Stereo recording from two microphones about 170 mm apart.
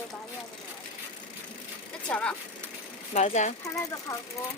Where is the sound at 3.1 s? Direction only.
45° left (ahead or behind).